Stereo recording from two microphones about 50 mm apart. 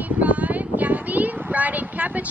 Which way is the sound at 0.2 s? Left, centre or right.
Right.